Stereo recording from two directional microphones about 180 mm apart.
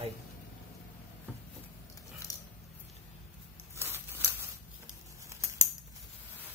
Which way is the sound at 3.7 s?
10° right (ahead or behind).